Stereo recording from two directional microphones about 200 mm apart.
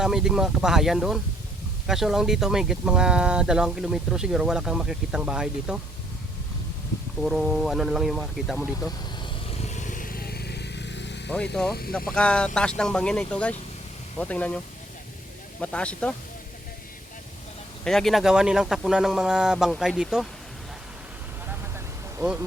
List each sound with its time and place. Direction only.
0.0 s speech: centre (ahead or behind)
7.2 s speech: centre (ahead or behind)
9.2 s vehicle: 30° left (ahead or behind); by 11.2 s 60° left (ahead or behind)
11.5 s speech: centre (ahead or behind)
15.6 s speech: 5° left (ahead or behind)
17.8 s speech: centre (ahead or behind)